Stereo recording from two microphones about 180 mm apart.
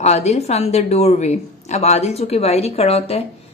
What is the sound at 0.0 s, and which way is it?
A woman's voice, 40° left (ahead or behind).